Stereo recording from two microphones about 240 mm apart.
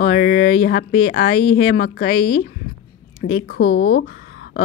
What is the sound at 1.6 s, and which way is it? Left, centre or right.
Speech, left.